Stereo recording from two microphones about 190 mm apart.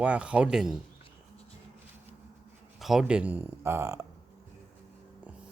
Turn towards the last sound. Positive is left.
turn(degrees=-15)  # may be behind; listen again after turning